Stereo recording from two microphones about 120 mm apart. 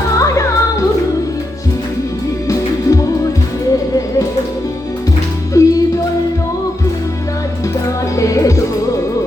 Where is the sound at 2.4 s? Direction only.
30° left (ahead or behind).